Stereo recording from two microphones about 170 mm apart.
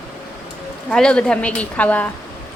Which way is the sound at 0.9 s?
5° left (ahead or behind).